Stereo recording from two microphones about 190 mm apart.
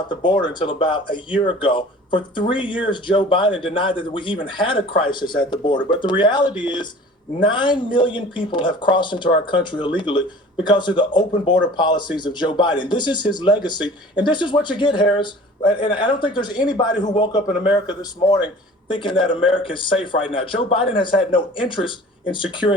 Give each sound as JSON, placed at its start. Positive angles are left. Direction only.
{"t": 0.1, "sound": "speech", "side_deg": 25}